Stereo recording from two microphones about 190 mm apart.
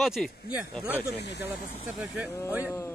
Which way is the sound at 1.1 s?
65° left (ahead or behind).